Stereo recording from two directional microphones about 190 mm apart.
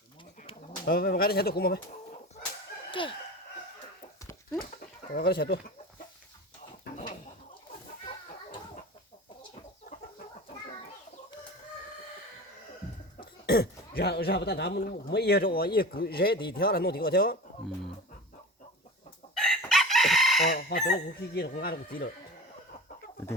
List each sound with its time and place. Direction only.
0.9 s speech: 50° left (ahead or behind)
2.9 s a sound: 25° left (ahead or behind)
5.1 s speech: 55° left (ahead or behind)
13.4 s speech: 55° left (ahead or behind)
19.3 s chicken: centre (ahead or behind)
20.5 s speech: 50° left (ahead or behind)